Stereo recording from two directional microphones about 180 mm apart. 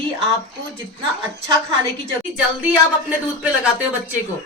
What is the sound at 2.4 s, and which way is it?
Speech, 5° right (ahead or behind).